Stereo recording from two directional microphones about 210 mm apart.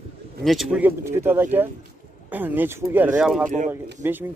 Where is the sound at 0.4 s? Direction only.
Centre (ahead or behind).